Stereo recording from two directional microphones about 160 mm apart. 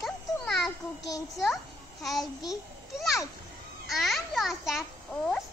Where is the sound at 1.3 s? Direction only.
Centre (ahead or behind).